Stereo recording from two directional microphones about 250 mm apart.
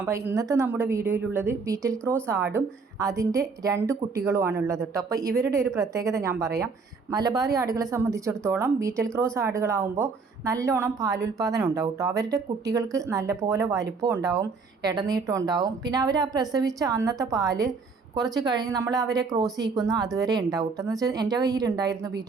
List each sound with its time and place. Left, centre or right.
0.0 s speech: centre